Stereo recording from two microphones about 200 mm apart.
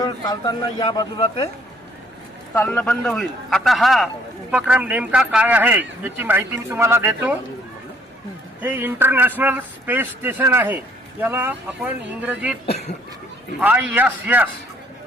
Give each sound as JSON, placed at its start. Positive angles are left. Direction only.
{"t": 0.0, "sound": "a man's voice", "side_deg": 20}
{"t": 2.6, "sound": "a man's voice", "side_deg": 0}
{"t": 8.6, "sound": "speech", "side_deg": -10}
{"t": 13.6, "sound": "speech", "side_deg": -10}